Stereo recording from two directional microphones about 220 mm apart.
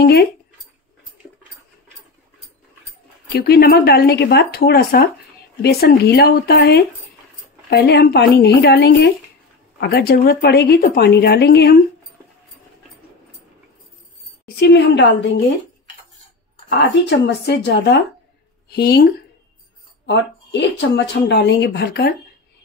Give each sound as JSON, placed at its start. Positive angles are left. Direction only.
{"t": 0.0, "sound": "speech", "side_deg": 45}
{"t": 3.3, "sound": "speech", "side_deg": 45}
{"t": 14.4, "sound": "speech", "side_deg": 50}
{"t": 16.7, "sound": "speech", "side_deg": 50}
{"t": 20.1, "sound": "speech", "side_deg": 55}